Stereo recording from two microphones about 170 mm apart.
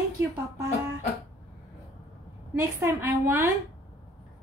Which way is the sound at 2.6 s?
15° right (ahead or behind).